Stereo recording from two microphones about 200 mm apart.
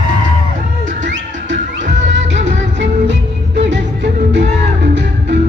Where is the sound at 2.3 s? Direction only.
35° right (ahead or behind).